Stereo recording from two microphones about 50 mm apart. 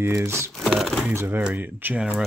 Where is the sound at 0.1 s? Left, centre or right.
Right.